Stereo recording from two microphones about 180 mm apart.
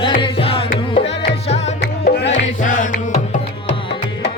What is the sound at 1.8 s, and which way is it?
Music, 60° left (ahead or behind).